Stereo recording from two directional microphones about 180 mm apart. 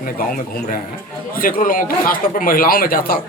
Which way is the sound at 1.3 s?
55° left (ahead or behind).